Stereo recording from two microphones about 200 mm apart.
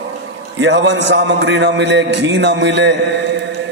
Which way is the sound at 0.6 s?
65° right (ahead or behind).